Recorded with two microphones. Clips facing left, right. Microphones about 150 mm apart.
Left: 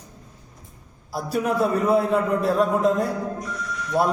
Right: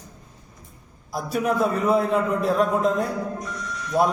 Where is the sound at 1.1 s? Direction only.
5° left (ahead or behind).